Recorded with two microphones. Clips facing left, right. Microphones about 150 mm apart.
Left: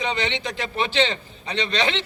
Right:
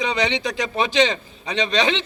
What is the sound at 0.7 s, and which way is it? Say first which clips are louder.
A man's voice: right 3 dB; 15° right (ahead or behind).